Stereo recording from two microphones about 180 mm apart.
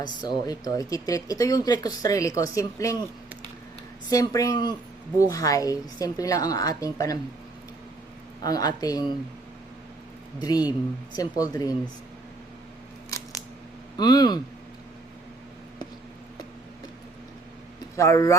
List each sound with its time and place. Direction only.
0.0 s speech: 20° left (ahead or behind)
4.1 s speech: 20° left (ahead or behind)
8.4 s speech: 20° left (ahead or behind)
10.4 s speech: 20° left (ahead or behind)
13.9 s speech: 25° left (ahead or behind)
17.9 s speech: 15° left (ahead or behind)